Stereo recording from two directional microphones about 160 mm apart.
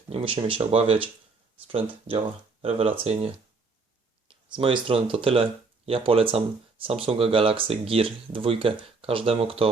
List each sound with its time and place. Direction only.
0.1 s speech: 35° right (ahead or behind)